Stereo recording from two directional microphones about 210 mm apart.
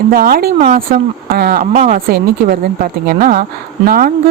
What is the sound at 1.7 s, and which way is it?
Speech, 30° right (ahead or behind).